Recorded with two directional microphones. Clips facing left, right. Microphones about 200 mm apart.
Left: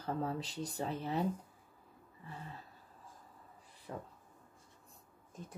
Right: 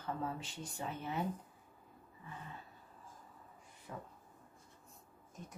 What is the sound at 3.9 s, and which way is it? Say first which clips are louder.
Speech: left 3 dB; 45° left (ahead or behind).